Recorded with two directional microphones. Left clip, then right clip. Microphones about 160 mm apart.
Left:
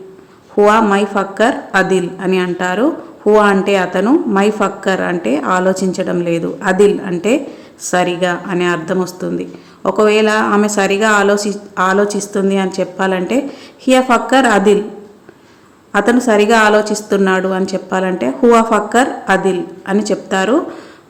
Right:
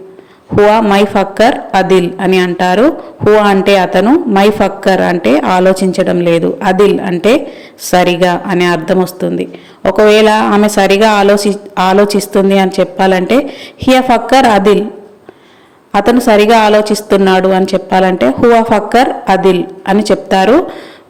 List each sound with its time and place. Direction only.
0.6 s speech: 20° right (ahead or behind)
15.9 s speech: 25° right (ahead or behind)